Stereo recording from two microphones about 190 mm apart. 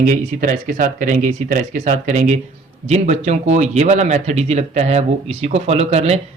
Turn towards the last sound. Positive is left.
turn(degrees=-35)  # may be behind; listen again after turning